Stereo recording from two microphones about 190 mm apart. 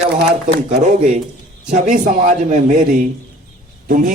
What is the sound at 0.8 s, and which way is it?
Speech, 40° right (ahead or behind).